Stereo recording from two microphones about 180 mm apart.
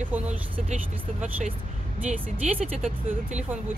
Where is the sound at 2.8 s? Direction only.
10° right (ahead or behind).